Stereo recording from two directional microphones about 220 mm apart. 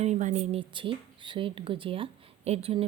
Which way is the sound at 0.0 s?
30° right (ahead or behind).